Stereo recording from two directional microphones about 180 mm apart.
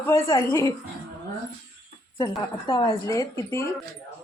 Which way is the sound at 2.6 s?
20° left (ahead or behind).